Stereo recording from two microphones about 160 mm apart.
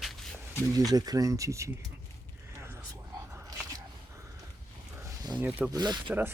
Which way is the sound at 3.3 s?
25° right (ahead or behind).